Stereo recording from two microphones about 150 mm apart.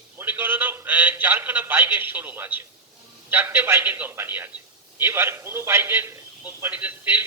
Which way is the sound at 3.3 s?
15° right (ahead or behind).